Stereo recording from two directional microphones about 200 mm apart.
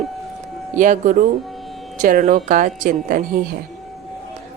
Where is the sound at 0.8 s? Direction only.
40° right (ahead or behind).